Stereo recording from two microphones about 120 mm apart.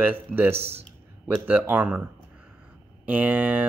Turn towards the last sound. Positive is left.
turn(degrees=-15)  # may be behind; listen again after turning